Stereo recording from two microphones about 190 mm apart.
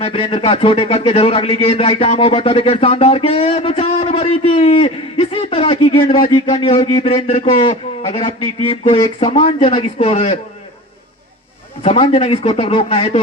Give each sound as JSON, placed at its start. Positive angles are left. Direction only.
{"t": 0.0, "sound": "a man's voice", "side_deg": 30}
{"t": 11.8, "sound": "a man's voice", "side_deg": 30}